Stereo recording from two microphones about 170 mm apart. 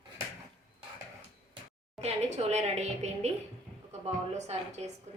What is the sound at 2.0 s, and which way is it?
A woman's voice, 40° right (ahead or behind).